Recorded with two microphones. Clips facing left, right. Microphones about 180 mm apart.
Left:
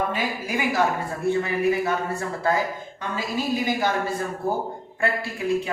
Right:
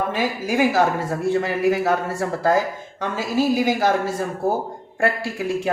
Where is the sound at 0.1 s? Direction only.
85° right.